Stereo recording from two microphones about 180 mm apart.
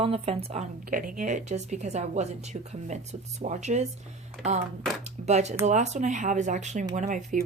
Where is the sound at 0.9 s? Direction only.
50° right (ahead or behind).